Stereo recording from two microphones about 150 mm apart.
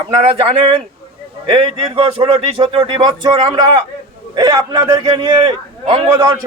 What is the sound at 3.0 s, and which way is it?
A man's voice, 30° right (ahead or behind).